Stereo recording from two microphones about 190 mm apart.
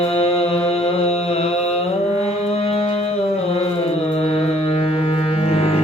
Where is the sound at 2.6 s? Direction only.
30° left (ahead or behind).